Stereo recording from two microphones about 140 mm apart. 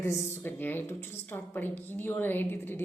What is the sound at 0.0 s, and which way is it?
A woman's voice, 20° left (ahead or behind).